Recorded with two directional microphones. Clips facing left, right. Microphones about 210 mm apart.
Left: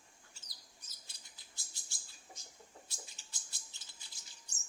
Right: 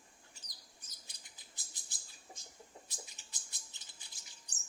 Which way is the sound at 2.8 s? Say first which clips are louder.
Right 2 dB; 15° right (ahead or behind).